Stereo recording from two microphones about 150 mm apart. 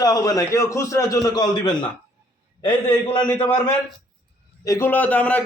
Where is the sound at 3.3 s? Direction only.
10° left (ahead or behind).